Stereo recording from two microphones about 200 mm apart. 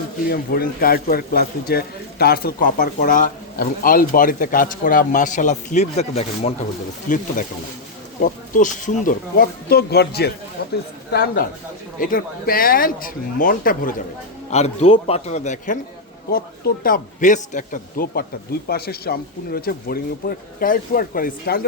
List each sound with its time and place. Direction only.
0.3 s a man's voice: 45° left (ahead or behind)
14.5 s a man's voice: 35° left (ahead or behind)